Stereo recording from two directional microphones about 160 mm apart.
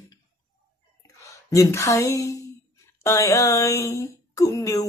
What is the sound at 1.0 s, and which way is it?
A woman's voice, 20° left (ahead or behind).